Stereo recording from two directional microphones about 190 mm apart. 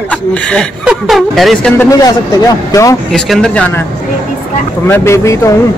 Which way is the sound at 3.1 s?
Centre (ahead or behind).